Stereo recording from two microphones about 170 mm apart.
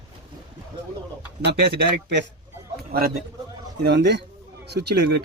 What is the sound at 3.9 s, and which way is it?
Speech, 90° right.